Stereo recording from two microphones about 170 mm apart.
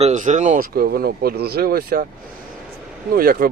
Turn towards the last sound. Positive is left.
turn(degrees=-60)  # may be behind; listen again after turning